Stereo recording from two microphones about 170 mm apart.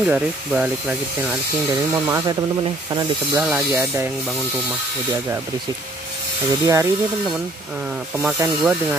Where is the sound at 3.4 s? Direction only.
5° right (ahead or behind).